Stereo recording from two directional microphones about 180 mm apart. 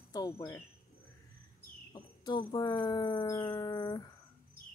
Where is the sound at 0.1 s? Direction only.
20° left (ahead or behind).